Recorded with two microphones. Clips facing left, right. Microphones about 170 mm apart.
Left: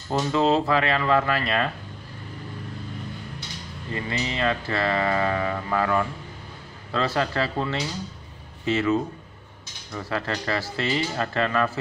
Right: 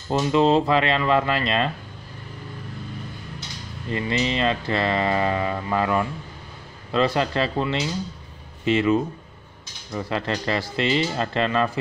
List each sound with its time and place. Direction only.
0.3 s speech: 15° right (ahead or behind)
3.9 s speech: 20° right (ahead or behind)